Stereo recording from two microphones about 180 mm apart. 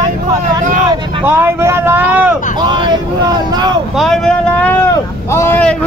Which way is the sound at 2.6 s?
25° right (ahead or behind).